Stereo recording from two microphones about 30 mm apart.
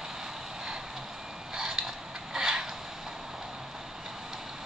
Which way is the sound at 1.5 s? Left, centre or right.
Centre.